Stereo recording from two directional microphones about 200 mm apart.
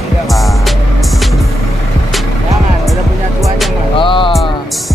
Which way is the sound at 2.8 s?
Centre (ahead or behind).